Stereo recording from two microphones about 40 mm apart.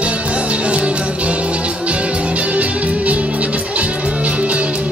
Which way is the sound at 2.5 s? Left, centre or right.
Right.